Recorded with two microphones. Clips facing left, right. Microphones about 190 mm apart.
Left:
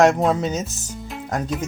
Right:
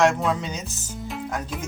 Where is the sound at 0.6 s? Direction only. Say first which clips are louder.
Left 1 dB; centre (ahead or behind).